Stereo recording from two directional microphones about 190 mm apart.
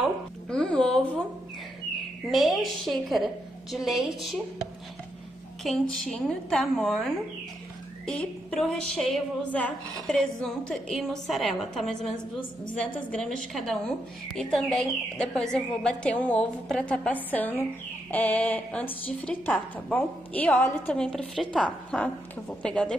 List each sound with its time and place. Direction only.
0.5 s a sound: 5° left (ahead or behind)
2.3 s a woman's voice: centre (ahead or behind)
5.6 s a woman's voice: centre (ahead or behind)